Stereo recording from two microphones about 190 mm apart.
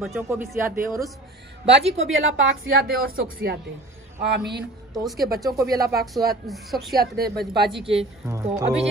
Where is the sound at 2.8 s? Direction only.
50° right (ahead or behind).